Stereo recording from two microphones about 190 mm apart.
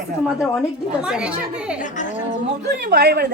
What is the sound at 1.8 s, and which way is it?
Speech, 40° left (ahead or behind).